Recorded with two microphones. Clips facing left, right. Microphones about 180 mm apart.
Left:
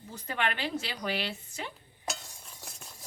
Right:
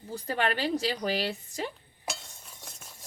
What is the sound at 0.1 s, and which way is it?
A woman's voice, 35° right (ahead or behind).